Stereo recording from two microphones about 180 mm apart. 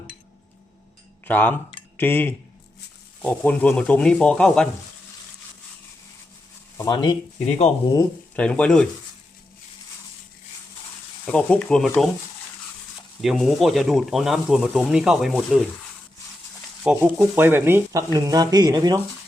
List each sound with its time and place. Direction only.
1.2 s speech: 10° left (ahead or behind)
6.7 s speech: 20° left (ahead or behind)
8.4 s speech: 5° left (ahead or behind)
11.3 s speech: 5° left (ahead or behind)
13.2 s speech: centre (ahead or behind)
16.8 s speech: 10° right (ahead or behind)